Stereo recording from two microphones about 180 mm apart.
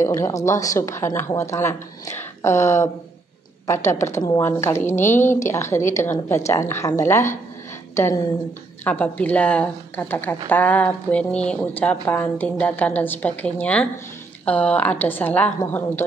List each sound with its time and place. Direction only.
0.0 s a woman's voice: 15° left (ahead or behind)
8.8 s a woman's voice: 10° left (ahead or behind)